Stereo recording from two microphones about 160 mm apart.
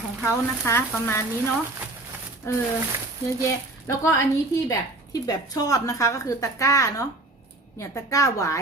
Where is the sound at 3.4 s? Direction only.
20° left (ahead or behind).